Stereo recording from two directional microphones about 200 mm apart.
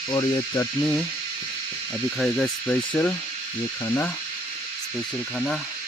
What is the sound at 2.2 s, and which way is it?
Speech, 5° left (ahead or behind).